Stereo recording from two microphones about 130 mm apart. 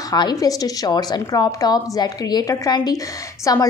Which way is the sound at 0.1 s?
30° left (ahead or behind).